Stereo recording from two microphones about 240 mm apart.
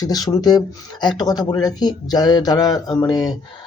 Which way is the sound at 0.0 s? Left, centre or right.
Centre.